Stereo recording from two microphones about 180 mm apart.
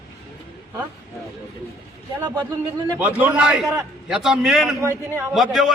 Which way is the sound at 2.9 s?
10° right (ahead or behind).